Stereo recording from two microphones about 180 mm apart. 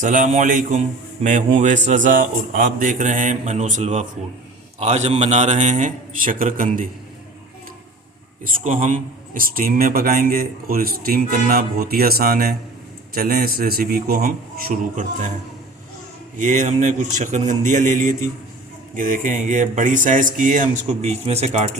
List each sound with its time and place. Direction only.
0.0 s a man's voice: 45° right (ahead or behind)
8.6 s a man's voice: 45° right (ahead or behind)
16.4 s a man's voice: 45° right (ahead or behind)